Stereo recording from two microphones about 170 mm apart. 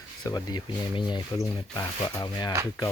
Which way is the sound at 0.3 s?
25° left (ahead or behind).